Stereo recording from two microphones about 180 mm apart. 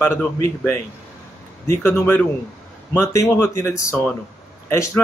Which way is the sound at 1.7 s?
15° left (ahead or behind).